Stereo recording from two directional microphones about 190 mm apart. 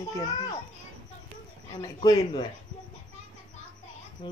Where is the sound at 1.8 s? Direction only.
20° left (ahead or behind).